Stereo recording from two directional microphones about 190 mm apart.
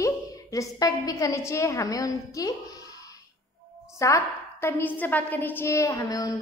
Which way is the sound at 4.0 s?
15° left (ahead or behind).